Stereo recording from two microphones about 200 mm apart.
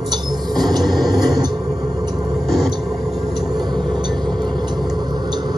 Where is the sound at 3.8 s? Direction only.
20° right (ahead or behind).